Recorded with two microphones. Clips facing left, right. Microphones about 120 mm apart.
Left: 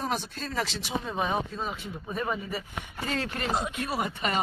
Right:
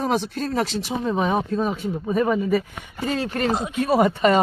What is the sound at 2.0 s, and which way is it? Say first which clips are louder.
Speech: right 10 dB; 85° right.